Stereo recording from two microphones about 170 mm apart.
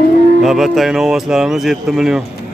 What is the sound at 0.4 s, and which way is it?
Speech, centre (ahead or behind).